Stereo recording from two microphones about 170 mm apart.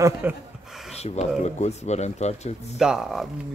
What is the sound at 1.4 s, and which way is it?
Speech, 40° left (ahead or behind).